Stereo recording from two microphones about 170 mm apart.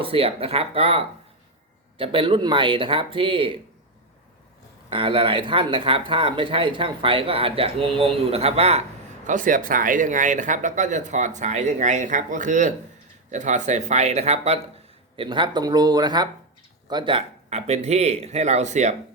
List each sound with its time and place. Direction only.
0.0 s speech: 35° right (ahead or behind)
4.9 s speech: 30° right (ahead or behind)
9.2 s speech: 50° right (ahead or behind)